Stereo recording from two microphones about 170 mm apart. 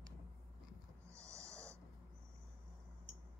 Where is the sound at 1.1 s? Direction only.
15° right (ahead or behind).